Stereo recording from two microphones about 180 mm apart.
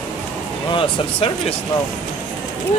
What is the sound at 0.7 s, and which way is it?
Speech, 30° left (ahead or behind).